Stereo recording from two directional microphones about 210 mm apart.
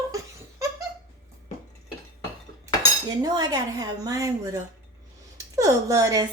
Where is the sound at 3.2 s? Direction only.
20° right (ahead or behind).